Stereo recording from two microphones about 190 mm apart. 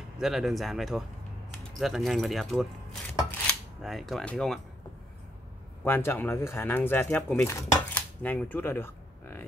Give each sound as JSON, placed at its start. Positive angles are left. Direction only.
{"t": 0.2, "sound": "speech", "side_deg": 0}
{"t": 5.9, "sound": "speech", "side_deg": 10}